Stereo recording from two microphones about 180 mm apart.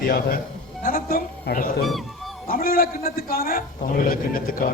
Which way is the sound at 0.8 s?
50° left (ahead or behind).